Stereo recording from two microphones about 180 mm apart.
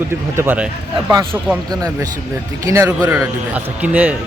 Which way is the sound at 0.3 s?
10° right (ahead or behind).